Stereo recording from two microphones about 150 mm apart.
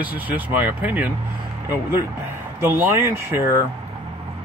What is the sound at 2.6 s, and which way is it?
Speech, 15° right (ahead or behind).